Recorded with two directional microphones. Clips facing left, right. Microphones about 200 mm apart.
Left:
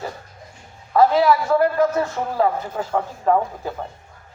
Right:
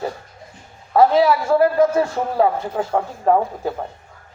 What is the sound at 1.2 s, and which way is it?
Speech, 25° right (ahead or behind).